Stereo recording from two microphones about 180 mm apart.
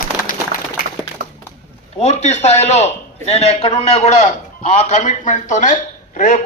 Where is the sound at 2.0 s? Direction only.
40° left (ahead or behind).